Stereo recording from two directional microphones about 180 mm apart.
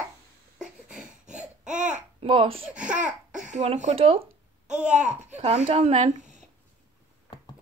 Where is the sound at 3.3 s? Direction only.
45° right (ahead or behind).